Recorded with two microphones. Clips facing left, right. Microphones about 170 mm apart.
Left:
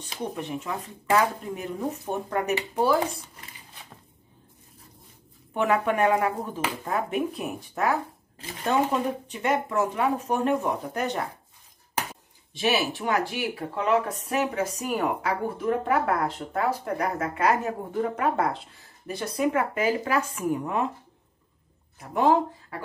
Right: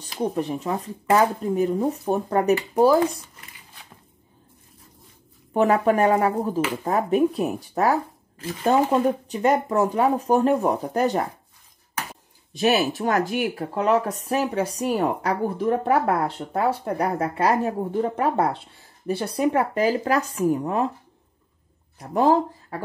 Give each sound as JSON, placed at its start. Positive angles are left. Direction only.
{"t": 0.0, "sound": "speech", "side_deg": -35}
{"t": 5.5, "sound": "speech", "side_deg": -40}
{"t": 12.5, "sound": "speech", "side_deg": -45}
{"t": 22.0, "sound": "speech", "side_deg": -35}